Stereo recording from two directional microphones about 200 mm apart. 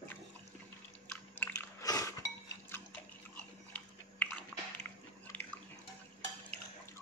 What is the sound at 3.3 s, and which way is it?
Biting, 5° left (ahead or behind).